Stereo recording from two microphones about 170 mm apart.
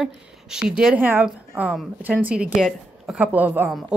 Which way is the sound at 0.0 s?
5° right (ahead or behind).